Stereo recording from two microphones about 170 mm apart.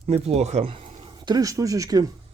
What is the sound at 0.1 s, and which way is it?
Speech, 40° right (ahead or behind).